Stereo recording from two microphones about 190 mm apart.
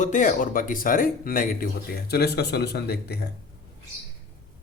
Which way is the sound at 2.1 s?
60° left (ahead or behind).